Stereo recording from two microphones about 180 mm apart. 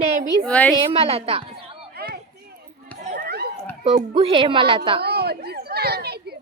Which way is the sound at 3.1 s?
60° right (ahead or behind).